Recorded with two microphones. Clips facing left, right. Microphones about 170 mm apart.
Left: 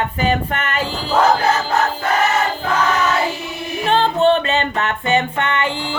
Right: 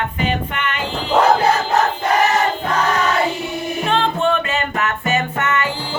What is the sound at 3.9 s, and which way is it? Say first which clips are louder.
Music: left 4 dB; 35° left (ahead or behind).